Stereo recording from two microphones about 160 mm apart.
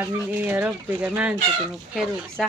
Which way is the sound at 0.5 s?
10° right (ahead or behind).